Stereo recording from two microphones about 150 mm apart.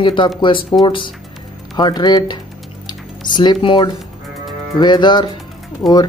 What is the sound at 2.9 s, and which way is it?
Music, 30° left (ahead or behind).